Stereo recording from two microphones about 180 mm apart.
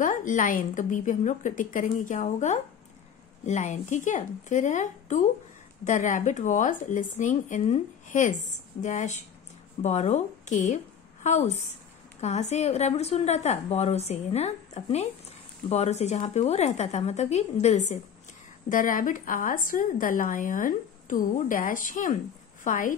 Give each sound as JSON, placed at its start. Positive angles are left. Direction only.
{"t": 0.0, "sound": "a woman's voice", "side_deg": 45}